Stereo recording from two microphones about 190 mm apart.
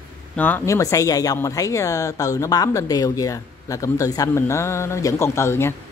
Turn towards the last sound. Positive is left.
turn(degrees=15)  # may be behind; listen again after turning